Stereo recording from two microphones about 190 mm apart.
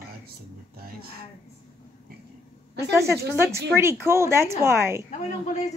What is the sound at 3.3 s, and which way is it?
A woman's voice, 15° right (ahead or behind).